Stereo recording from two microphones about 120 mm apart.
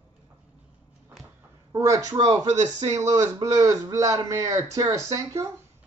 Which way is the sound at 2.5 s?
75° right (ahead or behind).